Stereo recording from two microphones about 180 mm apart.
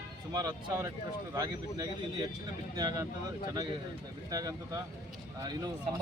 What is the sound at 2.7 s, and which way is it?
Speech, 20° right (ahead or behind).